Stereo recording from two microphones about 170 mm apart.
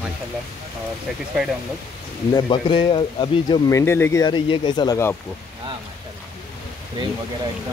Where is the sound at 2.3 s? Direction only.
30° left (ahead or behind).